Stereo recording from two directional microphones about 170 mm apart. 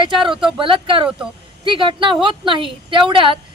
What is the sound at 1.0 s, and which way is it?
Speech, 5° right (ahead or behind).